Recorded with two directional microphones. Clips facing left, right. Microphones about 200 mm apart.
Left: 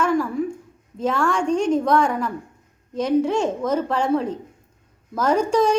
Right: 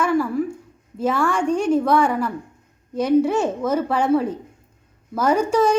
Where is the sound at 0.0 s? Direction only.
10° right (ahead or behind).